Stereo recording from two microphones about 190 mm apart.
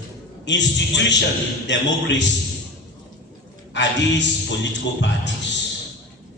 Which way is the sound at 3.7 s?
70° left (ahead or behind).